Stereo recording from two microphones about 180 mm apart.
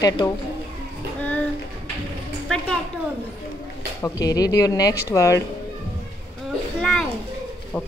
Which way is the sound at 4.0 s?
20° left (ahead or behind).